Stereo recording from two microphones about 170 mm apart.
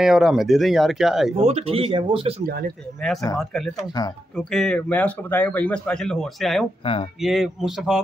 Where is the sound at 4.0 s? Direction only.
25° left (ahead or behind).